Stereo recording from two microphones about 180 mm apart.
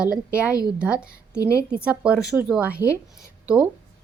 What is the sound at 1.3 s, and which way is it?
Speech, 15° left (ahead or behind).